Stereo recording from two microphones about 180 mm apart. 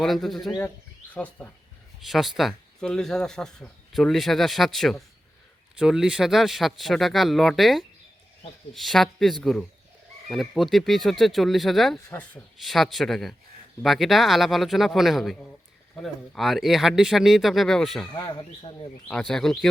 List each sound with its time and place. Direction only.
0.0 s speech: centre (ahead or behind)
12.0 s speech: 10° left (ahead or behind)
12.5 s speech: centre (ahead or behind)
18.1 s speech: 25° left (ahead or behind)
19.0 s speech: 5° left (ahead or behind)